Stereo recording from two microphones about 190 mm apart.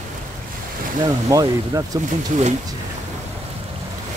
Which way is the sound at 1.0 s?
20° right (ahead or behind).